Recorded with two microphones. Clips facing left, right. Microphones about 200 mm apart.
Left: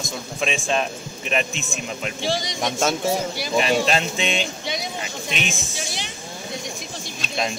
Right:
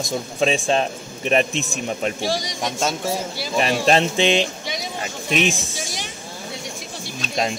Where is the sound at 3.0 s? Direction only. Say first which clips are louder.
Left 2 dB; 15° left (ahead or behind).